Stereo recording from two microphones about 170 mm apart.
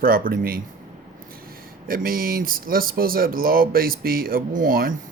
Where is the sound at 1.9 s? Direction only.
60° right (ahead or behind).